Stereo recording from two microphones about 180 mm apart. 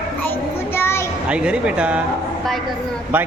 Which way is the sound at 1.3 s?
5° right (ahead or behind).